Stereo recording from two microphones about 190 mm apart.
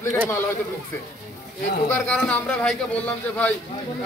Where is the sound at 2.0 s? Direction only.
5° left (ahead or behind).